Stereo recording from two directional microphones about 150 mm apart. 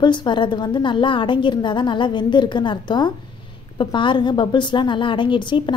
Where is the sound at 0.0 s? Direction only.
30° left (ahead or behind).